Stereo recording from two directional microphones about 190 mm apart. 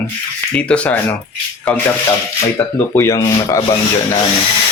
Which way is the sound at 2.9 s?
15° left (ahead or behind).